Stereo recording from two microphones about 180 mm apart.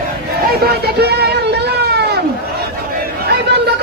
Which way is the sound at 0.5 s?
60° right (ahead or behind).